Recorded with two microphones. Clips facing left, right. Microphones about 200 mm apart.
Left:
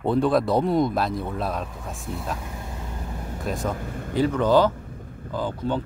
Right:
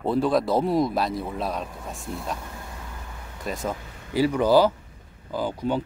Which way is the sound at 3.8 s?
50° left (ahead or behind).